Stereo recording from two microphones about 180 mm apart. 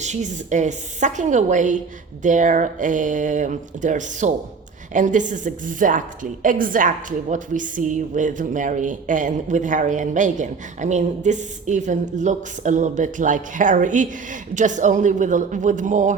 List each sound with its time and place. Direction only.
0.0 s a woman's voice: 40° right (ahead or behind)